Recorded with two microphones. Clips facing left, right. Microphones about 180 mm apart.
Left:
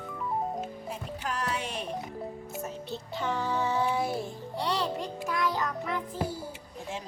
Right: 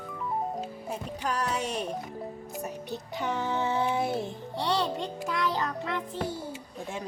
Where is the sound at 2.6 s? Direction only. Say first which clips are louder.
Right 3 dB; 15° right (ahead or behind).